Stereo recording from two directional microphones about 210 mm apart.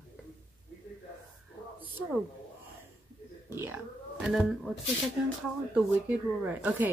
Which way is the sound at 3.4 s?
10° right (ahead or behind).